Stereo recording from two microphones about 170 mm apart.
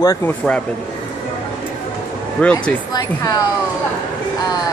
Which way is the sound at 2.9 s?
25° left (ahead or behind).